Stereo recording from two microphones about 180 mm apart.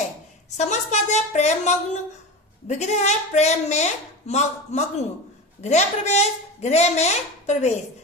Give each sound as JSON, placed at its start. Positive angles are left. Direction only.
{"t": 0.5, "sound": "a woman's voice", "side_deg": 40}